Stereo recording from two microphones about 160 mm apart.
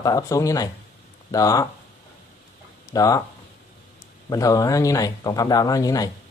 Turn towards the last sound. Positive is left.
turn(degrees=20)  # may be behind; listen again after turning